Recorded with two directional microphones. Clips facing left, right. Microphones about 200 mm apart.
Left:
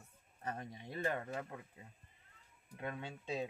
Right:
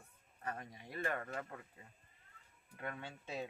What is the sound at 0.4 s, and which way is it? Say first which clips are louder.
Speech: left 2 dB; 25° left (ahead or behind).